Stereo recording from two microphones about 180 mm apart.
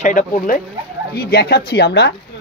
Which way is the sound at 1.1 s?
60° left (ahead or behind).